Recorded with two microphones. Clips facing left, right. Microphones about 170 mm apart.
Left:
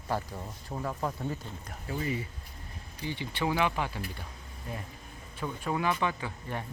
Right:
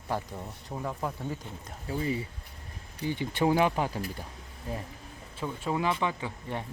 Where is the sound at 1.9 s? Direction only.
30° right (ahead or behind).